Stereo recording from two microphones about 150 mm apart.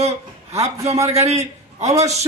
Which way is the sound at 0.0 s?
45° right (ahead or behind).